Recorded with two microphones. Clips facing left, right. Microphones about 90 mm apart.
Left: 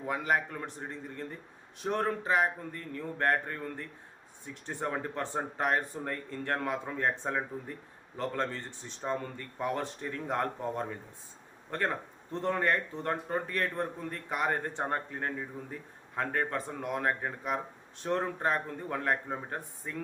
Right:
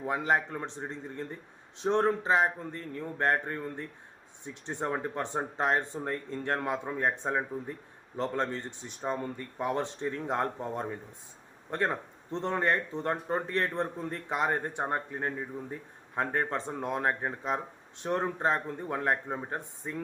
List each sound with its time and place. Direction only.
0.0 s speech: 25° right (ahead or behind)